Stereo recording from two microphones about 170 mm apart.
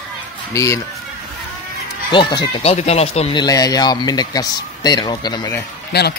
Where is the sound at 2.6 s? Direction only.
40° left (ahead or behind).